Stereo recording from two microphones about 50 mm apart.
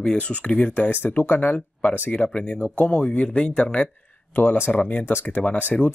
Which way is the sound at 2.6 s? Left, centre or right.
Left.